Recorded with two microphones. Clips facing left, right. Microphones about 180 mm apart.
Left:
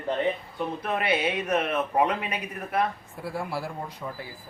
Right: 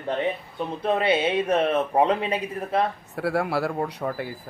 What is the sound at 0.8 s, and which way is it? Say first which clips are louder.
Speech: right 6 dB; 25° right (ahead or behind).